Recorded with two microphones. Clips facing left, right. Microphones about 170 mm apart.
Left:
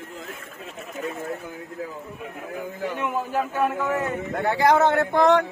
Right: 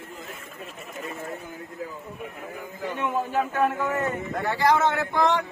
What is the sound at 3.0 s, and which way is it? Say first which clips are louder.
A man's voice: right 2 dB; 5° left (ahead or behind).